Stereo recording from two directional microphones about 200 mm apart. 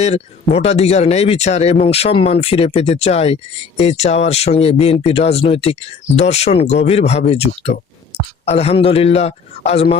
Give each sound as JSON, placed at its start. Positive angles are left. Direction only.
{"t": 0.0, "sound": "speech", "side_deg": 30}